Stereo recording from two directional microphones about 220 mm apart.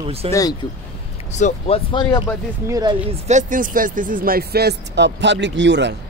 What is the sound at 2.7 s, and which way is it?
Speech, 20° right (ahead or behind).